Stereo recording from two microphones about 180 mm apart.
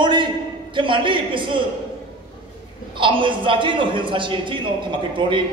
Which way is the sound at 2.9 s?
30° right (ahead or behind).